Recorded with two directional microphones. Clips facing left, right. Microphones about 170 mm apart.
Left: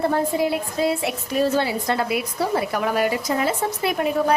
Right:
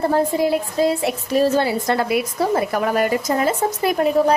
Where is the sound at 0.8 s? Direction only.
35° right (ahead or behind).